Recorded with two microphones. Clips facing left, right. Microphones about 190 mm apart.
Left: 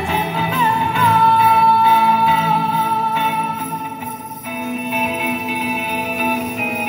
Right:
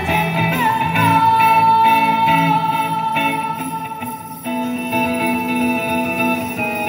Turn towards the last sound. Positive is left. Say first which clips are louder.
# right 3 dB
turn(degrees=-45)  # may be behind; listen again after turning